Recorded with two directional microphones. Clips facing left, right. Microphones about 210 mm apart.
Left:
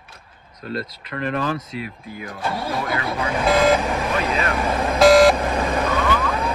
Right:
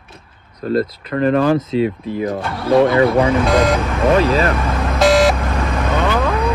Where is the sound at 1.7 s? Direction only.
30° right (ahead or behind).